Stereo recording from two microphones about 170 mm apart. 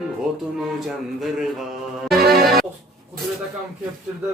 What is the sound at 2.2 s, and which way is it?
Music, 65° right (ahead or behind).